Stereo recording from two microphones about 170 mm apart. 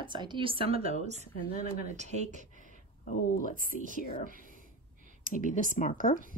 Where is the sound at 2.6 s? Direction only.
50° left (ahead or behind).